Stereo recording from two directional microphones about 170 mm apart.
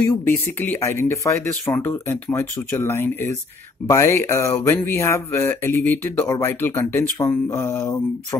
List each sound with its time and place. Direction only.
0.6 s speech: 15° left (ahead or behind)